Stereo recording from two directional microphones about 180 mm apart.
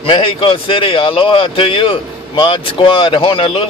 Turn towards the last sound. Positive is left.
turn(degrees=30)  # may be behind; listen again after turning